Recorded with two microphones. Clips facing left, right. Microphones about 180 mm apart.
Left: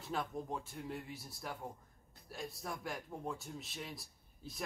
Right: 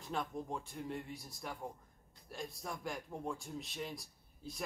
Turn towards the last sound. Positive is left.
turn(degrees=0)  # may be behind; listen again after turning